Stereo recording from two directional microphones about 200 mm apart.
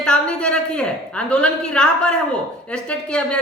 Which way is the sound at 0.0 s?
5° left (ahead or behind).